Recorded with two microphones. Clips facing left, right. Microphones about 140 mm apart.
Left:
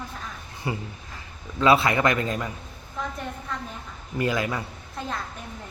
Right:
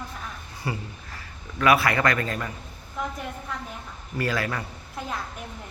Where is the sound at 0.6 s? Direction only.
20° left (ahead or behind).